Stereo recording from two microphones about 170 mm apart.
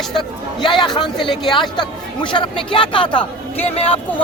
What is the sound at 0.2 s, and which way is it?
Speech, 25° left (ahead or behind).